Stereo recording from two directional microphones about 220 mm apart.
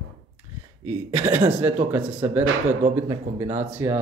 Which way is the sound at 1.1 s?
10° right (ahead or behind).